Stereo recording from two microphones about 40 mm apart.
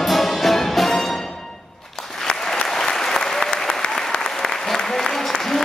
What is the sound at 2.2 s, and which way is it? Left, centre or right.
Applause, left.